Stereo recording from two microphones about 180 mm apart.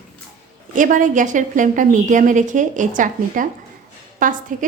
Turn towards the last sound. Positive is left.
turn(degrees=-45)  # may be behind; listen again after turning